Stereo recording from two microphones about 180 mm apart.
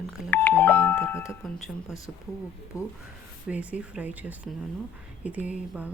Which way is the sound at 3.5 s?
5° right (ahead or behind).